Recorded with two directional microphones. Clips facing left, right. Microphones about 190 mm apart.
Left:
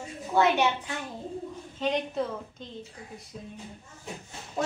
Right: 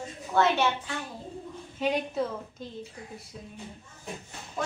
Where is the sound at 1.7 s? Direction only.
10° right (ahead or behind).